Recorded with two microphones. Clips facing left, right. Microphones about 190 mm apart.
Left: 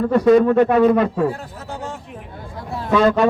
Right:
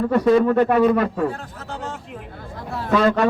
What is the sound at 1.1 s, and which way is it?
Speech, 10° left (ahead or behind).